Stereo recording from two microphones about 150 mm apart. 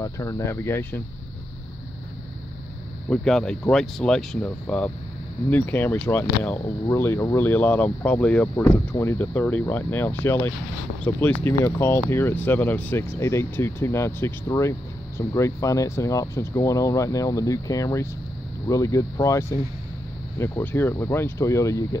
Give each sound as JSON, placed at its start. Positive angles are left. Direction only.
{"t": 0.0, "sound": "speech", "side_deg": 20}
{"t": 3.1, "sound": "speech", "side_deg": 5}